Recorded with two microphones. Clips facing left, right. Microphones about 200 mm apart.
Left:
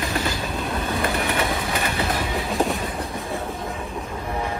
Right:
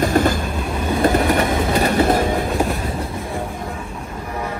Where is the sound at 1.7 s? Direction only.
45° right (ahead or behind).